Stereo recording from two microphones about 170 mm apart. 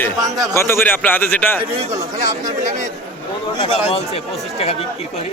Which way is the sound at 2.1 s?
45° right (ahead or behind).